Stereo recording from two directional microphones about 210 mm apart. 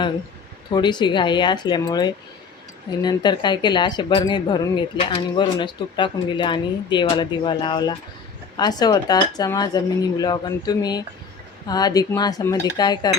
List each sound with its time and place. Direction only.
0.7 s speech: 20° left (ahead or behind)